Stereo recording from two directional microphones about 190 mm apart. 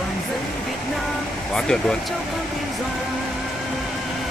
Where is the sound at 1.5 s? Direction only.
5° left (ahead or behind).